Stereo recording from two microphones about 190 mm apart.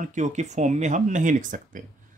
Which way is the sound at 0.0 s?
40° right (ahead or behind).